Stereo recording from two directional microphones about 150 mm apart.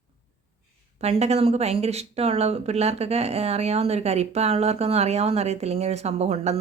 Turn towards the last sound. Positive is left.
turn(degrees=-45)  # may be behind; listen again after turning